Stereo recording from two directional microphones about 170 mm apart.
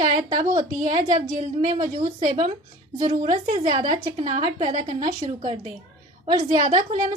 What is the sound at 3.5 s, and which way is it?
Speech, 30° right (ahead or behind).